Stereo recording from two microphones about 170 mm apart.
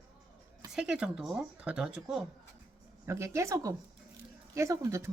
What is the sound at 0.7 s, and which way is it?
A woman's voice, 5° right (ahead or behind).